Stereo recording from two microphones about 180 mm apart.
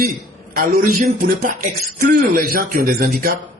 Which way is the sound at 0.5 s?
55° right (ahead or behind).